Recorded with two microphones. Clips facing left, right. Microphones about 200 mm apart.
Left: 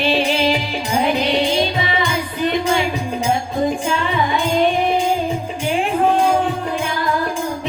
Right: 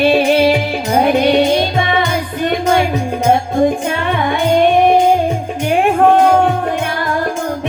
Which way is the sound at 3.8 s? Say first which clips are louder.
Right 3 dB; 60° right (ahead or behind).